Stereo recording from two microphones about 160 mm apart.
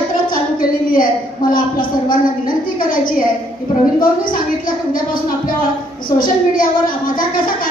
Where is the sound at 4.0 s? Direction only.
60° left (ahead or behind).